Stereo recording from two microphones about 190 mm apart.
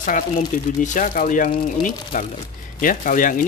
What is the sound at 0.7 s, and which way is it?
Speech, 45° left (ahead or behind).